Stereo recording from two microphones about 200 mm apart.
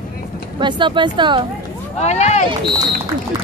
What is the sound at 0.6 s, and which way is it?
Speech, 25° right (ahead or behind).